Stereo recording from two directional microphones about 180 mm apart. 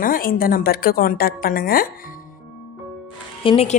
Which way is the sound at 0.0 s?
50° left (ahead or behind).